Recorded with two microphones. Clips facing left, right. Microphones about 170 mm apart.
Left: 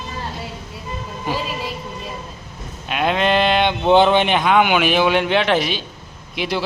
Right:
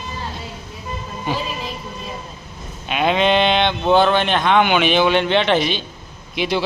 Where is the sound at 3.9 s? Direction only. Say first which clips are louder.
Left 2 dB; 20° left (ahead or behind).